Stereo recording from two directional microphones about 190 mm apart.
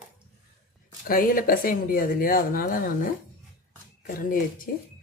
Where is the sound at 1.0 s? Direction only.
50° left (ahead or behind).